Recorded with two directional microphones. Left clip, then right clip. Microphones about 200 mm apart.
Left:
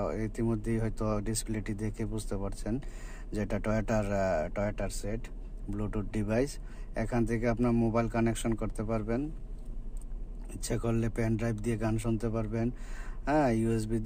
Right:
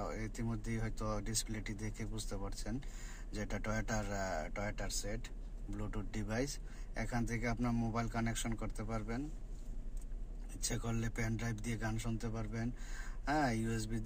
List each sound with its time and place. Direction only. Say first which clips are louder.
0.0 s a man's voice: left 10 dB; 50° left (ahead or behind)
10.6 s a man's voice: left 9 dB; 50° left (ahead or behind)